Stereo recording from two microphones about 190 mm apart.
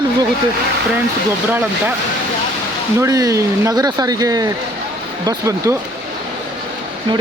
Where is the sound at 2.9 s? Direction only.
20° right (ahead or behind).